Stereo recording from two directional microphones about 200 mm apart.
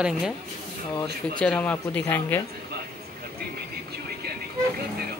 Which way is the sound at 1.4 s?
5° left (ahead or behind).